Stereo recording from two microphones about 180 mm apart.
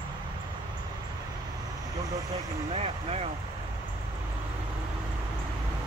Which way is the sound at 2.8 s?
35° right (ahead or behind).